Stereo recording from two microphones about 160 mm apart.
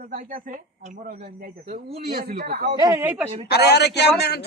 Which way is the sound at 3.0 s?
10° right (ahead or behind).